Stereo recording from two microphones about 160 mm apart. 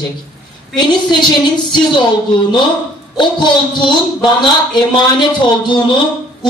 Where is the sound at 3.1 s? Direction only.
30° left (ahead or behind).